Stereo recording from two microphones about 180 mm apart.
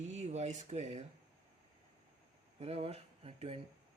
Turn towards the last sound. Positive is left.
turn(degrees=-35)  # may be behind; listen again after turning